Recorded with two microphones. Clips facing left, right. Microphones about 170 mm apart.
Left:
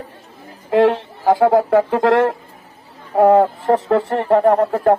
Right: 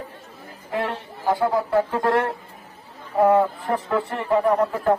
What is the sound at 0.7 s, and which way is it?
Speech, 90° left.